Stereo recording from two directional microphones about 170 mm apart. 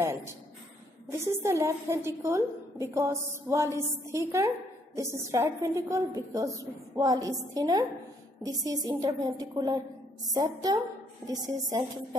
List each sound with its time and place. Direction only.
1.1 s a woman's voice: 15° right (ahead or behind)